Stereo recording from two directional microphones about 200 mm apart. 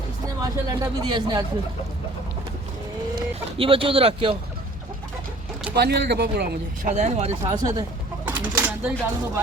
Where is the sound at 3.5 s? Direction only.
25° right (ahead or behind).